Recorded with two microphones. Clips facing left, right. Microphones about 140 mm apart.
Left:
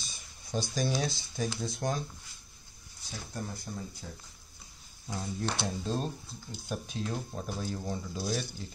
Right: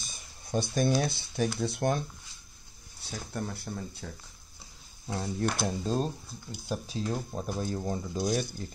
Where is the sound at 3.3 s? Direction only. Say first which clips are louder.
Right 3 dB; 60° right (ahead or behind).